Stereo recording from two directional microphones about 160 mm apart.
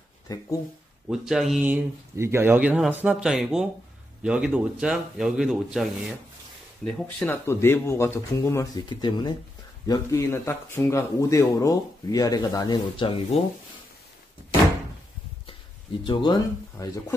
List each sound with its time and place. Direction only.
0.3 s speech: 20° left (ahead or behind)
1.0 s speech: 5° right (ahead or behind); by 13.4 s 35° left (ahead or behind)
16.1 s speech: 25° left (ahead or behind)